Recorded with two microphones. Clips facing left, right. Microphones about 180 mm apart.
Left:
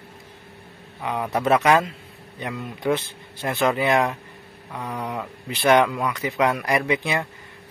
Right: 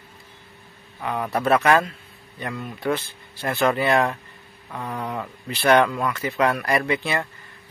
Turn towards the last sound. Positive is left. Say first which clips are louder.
# even
turn(degrees=15)  # may be behind; listen again after turning